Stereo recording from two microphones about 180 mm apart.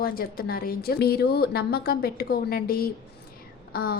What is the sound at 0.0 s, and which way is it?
A woman's voice, 55° left (ahead or behind).